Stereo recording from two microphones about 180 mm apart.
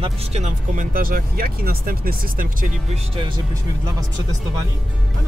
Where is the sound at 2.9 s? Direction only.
25° right (ahead or behind).